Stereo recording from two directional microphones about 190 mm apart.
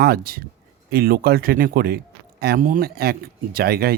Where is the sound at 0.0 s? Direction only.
55° right (ahead or behind).